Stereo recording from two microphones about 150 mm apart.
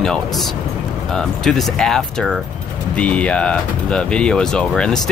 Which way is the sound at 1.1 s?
5° left (ahead or behind).